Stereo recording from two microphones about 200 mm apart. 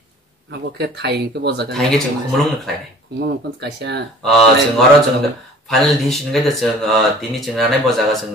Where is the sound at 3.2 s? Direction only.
55° right (ahead or behind).